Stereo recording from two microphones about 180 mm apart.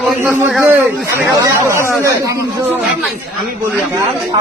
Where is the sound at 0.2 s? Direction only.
10° right (ahead or behind).